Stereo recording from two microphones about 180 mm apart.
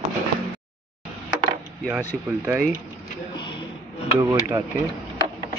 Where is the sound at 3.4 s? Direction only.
25° left (ahead or behind).